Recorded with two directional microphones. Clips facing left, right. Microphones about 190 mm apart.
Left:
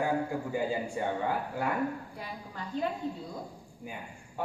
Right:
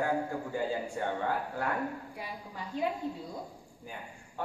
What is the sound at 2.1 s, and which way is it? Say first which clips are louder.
Speech: even; 10° right (ahead or behind).